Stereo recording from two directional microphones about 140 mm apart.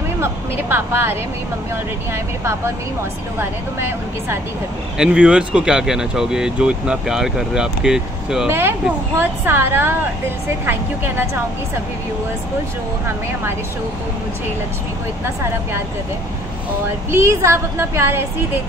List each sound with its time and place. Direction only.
0.2 s a woman's voice: 15° right (ahead or behind)
4.9 s speech: 5° right (ahead or behind)
8.5 s a woman's voice: 15° right (ahead or behind)
17.1 s a woman's voice: 20° right (ahead or behind)